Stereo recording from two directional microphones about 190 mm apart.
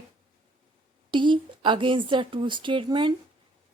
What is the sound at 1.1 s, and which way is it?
A woman's voice, 25° right (ahead or behind).